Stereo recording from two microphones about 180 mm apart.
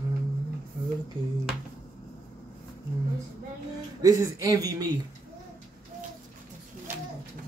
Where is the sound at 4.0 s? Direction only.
20° right (ahead or behind).